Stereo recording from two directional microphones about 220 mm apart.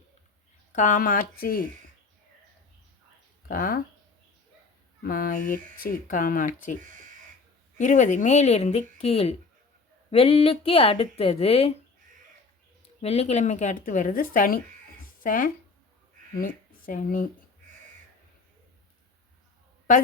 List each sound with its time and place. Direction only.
0.7 s speech: 35° left (ahead or behind)
3.5 s speech: 40° left (ahead or behind)
5.0 s speech: 40° left (ahead or behind)
7.8 s speech: 35° left (ahead or behind)
13.0 s speech: 30° left (ahead or behind)